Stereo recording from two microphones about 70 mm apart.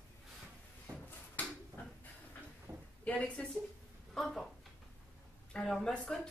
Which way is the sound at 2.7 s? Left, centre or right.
Right.